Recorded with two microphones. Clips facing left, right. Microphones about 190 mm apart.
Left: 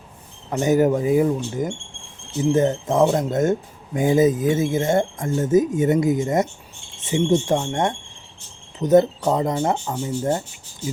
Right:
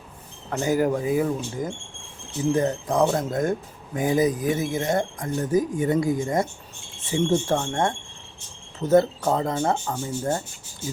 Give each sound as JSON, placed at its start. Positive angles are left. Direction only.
{"t": 0.5, "sound": "speech", "side_deg": 20}